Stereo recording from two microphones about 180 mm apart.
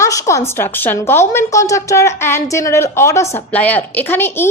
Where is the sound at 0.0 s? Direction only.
15° left (ahead or behind).